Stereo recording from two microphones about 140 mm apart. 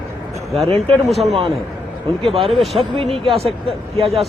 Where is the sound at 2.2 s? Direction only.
40° right (ahead or behind).